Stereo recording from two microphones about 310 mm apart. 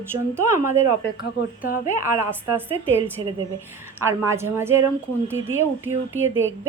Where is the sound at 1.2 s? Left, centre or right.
Left.